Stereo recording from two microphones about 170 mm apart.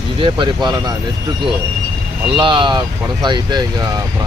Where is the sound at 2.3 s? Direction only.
30° right (ahead or behind).